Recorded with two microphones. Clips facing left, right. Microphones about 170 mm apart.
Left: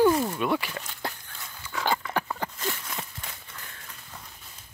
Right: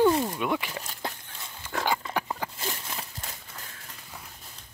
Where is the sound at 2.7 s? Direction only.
35° right (ahead or behind).